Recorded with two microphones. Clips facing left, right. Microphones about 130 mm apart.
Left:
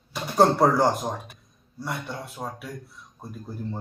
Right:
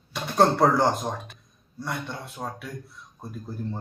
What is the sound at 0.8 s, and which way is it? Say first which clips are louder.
Speech: left 1 dB; 10° left (ahead or behind).